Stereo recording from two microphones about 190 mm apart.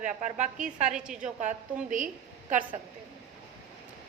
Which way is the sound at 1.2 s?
40° right (ahead or behind).